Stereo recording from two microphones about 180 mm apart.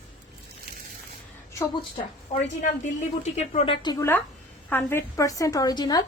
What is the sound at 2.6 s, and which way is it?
A woman's voice, 40° left (ahead or behind).